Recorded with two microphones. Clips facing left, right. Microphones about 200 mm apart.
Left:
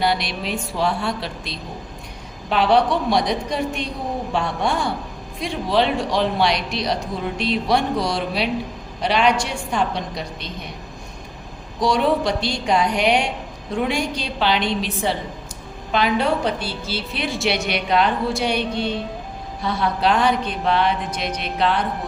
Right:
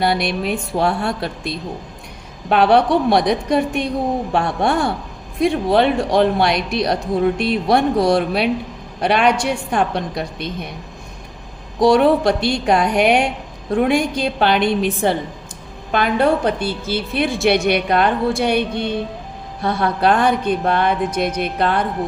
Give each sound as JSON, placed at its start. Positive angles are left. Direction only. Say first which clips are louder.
{"t": 0.0, "sound": "a woman's voice", "louder": "right 4 dB", "side_deg": -55}
{"t": 11.8, "sound": "a woman's voice", "louder": "right 6 dB", "side_deg": -60}